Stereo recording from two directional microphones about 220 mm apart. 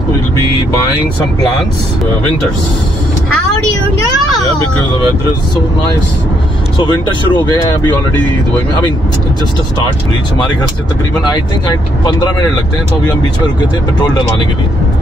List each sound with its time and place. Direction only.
6.8 s speech: 20° left (ahead or behind)